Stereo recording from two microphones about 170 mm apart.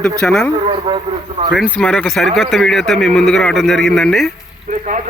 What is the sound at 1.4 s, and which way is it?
Speech, 30° right (ahead or behind).